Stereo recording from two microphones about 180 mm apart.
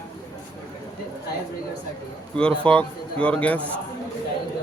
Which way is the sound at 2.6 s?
5° left (ahead or behind).